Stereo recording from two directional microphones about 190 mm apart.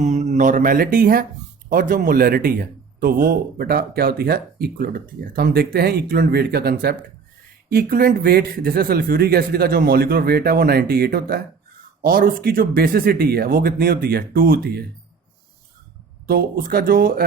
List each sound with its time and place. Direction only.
0.0 s a man's voice: 40° right (ahead or behind)
16.2 s a man's voice: 50° right (ahead or behind)